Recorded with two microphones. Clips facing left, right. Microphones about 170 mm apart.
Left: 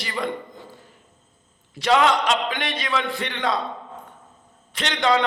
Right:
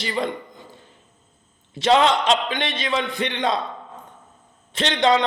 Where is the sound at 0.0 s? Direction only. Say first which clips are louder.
Right 2 dB; 25° right (ahead or behind).